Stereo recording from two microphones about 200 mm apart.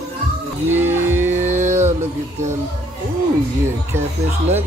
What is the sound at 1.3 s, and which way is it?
Music, 35° right (ahead or behind).